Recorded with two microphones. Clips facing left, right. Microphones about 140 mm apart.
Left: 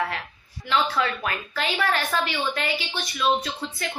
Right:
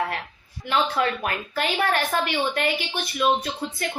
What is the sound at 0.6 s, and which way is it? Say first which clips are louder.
A woman's voice: right 1 dB; 45° right (ahead or behind).